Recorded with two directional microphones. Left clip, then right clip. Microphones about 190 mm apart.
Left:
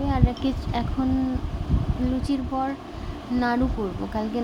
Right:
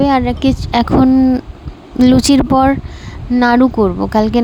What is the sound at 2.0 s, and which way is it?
Speech, 70° right (ahead or behind).